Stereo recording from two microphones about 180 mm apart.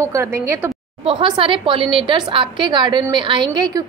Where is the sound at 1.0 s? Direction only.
25° right (ahead or behind).